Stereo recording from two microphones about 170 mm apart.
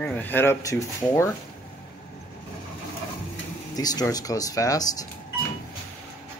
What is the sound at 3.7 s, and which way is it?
Speech, 20° left (ahead or behind).